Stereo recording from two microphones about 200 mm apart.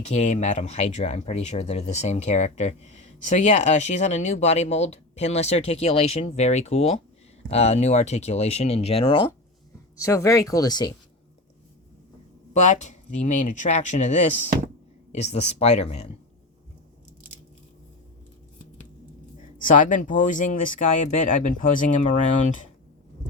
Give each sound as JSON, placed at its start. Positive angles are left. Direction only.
{"t": 0.0, "sound": "speech", "side_deg": 35}
{"t": 10.0, "sound": "speech", "side_deg": 15}
{"t": 12.5, "sound": "speech", "side_deg": 35}
{"t": 19.4, "sound": "speech", "side_deg": 40}